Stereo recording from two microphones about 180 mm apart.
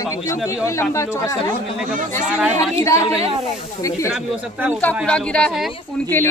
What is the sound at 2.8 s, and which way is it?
Speech, 15° left (ahead or behind).